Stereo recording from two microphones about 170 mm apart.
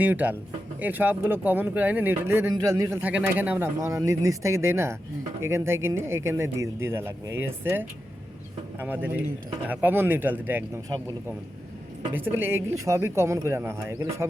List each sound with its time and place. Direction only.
0.0 s speech: 10° right (ahead or behind)
12.1 s speech: 15° right (ahead or behind)